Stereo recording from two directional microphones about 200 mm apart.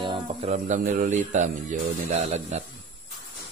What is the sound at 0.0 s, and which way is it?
Speech, 25° right (ahead or behind).